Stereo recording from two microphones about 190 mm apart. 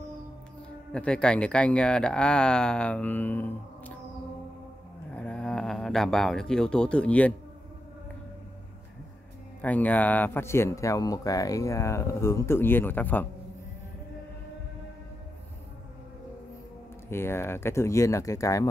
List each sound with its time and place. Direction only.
0.9 s speech: 5° left (ahead or behind)
5.1 s speech: 5° left (ahead or behind)
9.6 s speech: 10° left (ahead or behind)
17.1 s speech: 10° left (ahead or behind)